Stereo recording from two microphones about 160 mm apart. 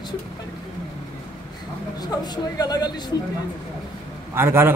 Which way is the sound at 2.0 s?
25° left (ahead or behind).